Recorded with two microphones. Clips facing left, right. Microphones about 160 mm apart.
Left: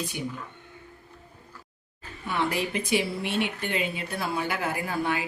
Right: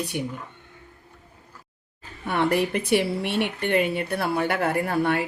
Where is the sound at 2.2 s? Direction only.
60° right (ahead or behind).